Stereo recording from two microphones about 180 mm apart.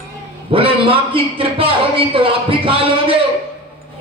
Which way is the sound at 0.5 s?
30° right (ahead or behind).